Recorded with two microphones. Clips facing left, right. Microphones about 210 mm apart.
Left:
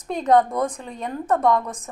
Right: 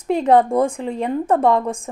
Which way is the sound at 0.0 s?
30° right (ahead or behind).